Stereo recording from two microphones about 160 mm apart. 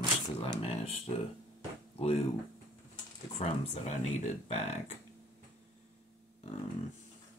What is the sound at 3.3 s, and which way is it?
Speech, 45° left (ahead or behind).